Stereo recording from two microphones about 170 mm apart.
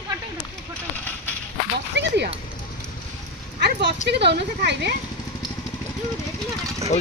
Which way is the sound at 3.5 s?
80° right.